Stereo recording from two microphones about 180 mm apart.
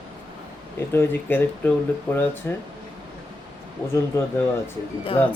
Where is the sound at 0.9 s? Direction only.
10° left (ahead or behind).